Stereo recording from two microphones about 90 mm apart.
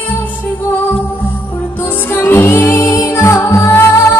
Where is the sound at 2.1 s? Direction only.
25° left (ahead or behind).